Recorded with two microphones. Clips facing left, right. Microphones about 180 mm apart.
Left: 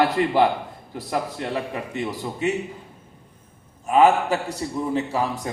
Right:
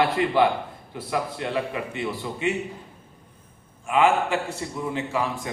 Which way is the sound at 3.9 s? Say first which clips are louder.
Left 3 dB; 40° left (ahead or behind).